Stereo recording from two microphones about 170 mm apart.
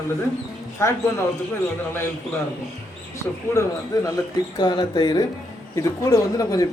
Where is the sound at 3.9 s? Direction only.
20° left (ahead or behind).